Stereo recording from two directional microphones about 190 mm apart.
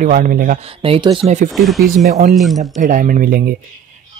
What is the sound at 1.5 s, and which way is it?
Speech, centre (ahead or behind).